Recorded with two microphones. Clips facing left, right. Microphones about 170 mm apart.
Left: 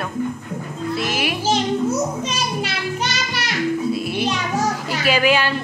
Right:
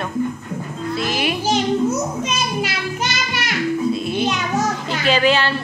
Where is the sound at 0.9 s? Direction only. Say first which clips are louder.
Right 1 dB; 5° left (ahead or behind).